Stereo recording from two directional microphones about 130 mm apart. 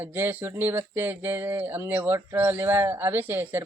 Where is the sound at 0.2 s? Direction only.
15° right (ahead or behind).